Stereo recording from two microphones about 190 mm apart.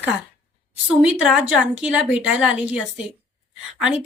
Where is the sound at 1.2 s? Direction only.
5° right (ahead or behind).